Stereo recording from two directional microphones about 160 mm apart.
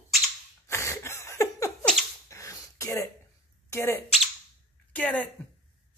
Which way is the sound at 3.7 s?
20° left (ahead or behind).